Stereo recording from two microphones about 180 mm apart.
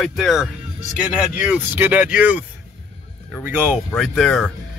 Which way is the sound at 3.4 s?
5° right (ahead or behind).